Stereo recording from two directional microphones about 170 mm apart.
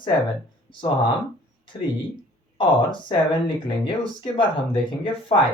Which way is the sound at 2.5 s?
30° left (ahead or behind).